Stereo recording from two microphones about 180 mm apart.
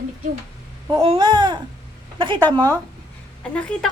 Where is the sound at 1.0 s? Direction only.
30° right (ahead or behind).